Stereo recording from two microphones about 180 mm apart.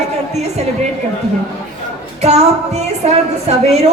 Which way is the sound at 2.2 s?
35° right (ahead or behind).